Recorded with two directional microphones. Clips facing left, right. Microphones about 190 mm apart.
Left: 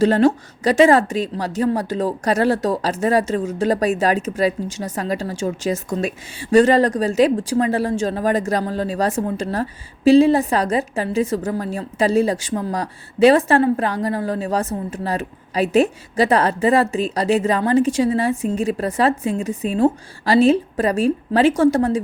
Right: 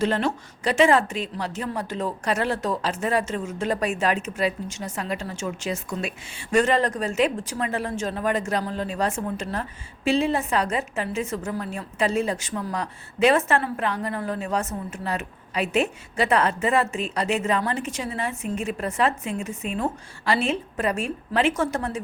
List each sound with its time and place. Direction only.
0.0 s a woman's voice: 35° left (ahead or behind)